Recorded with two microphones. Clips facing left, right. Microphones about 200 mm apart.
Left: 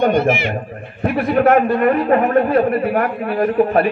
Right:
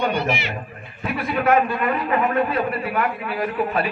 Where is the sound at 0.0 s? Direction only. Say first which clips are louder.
Left 8 dB; 50° left (ahead or behind).